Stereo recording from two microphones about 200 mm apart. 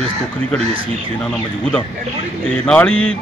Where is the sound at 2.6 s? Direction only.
5° left (ahead or behind).